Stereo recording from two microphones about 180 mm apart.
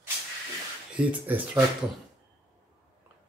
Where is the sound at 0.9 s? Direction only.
10° right (ahead or behind).